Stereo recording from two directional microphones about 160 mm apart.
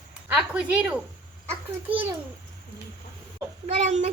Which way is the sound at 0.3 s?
10° right (ahead or behind).